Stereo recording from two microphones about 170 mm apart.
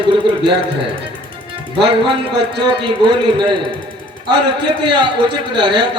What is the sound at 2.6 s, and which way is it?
Speech, 25° right (ahead or behind).